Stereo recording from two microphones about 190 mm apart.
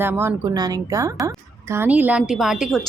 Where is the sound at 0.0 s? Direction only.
10° right (ahead or behind).